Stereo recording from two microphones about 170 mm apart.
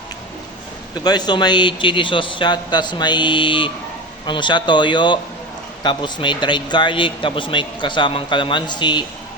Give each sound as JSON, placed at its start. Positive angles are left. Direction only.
{"t": 1.0, "sound": "a man's voice", "side_deg": 25}